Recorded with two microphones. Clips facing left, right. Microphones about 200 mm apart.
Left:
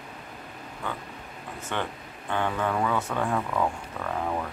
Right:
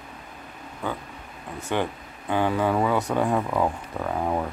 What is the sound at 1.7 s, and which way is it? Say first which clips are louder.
Speech: right 6 dB; 10° right (ahead or behind).